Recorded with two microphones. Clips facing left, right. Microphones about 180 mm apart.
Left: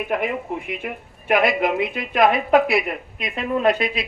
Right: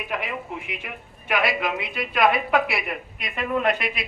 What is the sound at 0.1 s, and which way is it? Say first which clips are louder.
A woman's voice: left 5 dB; 50° left (ahead or behind).